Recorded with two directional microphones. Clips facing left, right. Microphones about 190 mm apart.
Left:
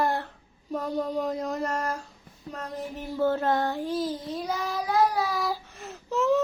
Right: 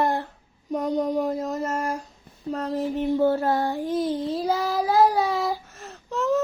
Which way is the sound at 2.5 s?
30° right (ahead or behind).